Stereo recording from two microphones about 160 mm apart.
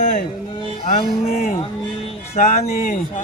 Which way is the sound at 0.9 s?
50° left (ahead or behind).